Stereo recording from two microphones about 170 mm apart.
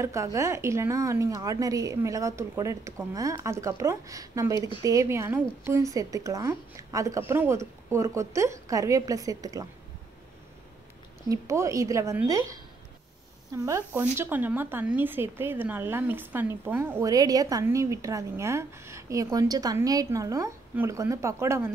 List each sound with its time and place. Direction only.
0.0 s a woman's voice: 15° right (ahead or behind)
11.2 s a woman's voice: 15° right (ahead or behind)
13.7 s speech: 15° right (ahead or behind)